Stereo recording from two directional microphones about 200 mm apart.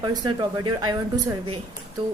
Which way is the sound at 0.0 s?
20° right (ahead or behind).